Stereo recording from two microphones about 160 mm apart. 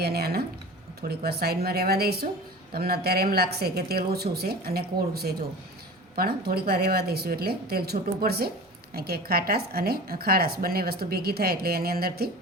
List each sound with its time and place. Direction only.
0.0 s speech: 80° right